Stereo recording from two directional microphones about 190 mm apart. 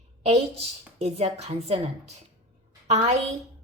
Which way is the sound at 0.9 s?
35° right (ahead or behind).